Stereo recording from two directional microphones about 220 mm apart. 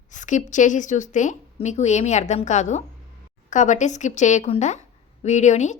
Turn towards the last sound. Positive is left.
turn(degrees=30)  # may be behind; listen again after turning